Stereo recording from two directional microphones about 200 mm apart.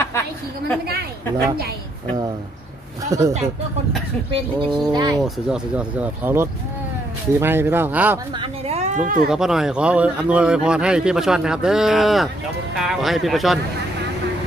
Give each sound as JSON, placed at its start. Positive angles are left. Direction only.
{"t": 3.1, "sound": "speech", "side_deg": -15}
{"t": 5.2, "sound": "speech", "side_deg": -5}
{"t": 8.4, "sound": "a sound", "side_deg": -30}
{"t": 9.3, "sound": "speech", "side_deg": 0}